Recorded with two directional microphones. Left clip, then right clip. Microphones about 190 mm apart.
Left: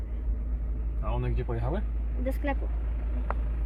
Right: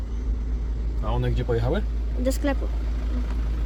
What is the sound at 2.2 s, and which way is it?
Speech, centre (ahead or behind).